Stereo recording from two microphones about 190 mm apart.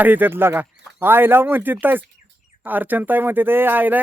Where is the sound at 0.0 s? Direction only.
10° right (ahead or behind).